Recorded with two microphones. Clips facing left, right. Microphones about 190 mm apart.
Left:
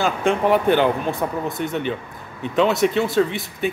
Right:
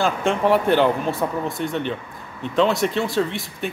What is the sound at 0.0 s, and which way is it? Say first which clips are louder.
A man's voice: left 1 dB; centre (ahead or behind).